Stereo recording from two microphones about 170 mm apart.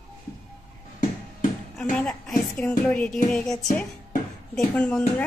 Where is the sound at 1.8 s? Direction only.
5° left (ahead or behind).